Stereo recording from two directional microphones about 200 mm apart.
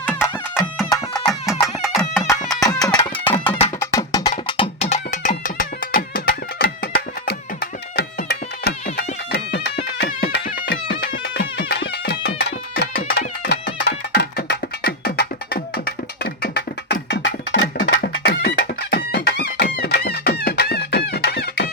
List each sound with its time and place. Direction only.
0.9 s music: 20° left (ahead or behind)
1.6 s music: centre (ahead or behind)
2.7 s music: 20° left (ahead or behind)
3.3 s music: 30° left (ahead or behind)
3.8 s music: 15° left (ahead or behind); by 17.9 s 60° left (ahead or behind)
17.9 s music: 50° left (ahead or behind)